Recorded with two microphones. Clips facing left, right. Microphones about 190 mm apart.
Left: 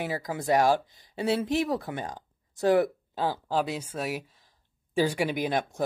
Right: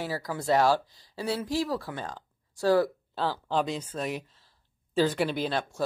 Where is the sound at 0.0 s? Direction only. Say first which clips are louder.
Left 1 dB; 20° left (ahead or behind).